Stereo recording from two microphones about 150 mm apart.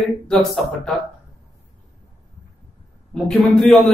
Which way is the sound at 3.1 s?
Centre (ahead or behind).